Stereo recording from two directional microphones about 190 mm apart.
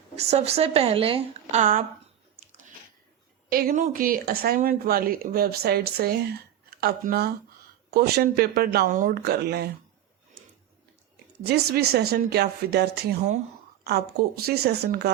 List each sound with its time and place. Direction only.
0.2 s a woman's voice: 35° right (ahead or behind)
3.5 s speech: 50° right (ahead or behind)
11.4 s speech: 55° right (ahead or behind)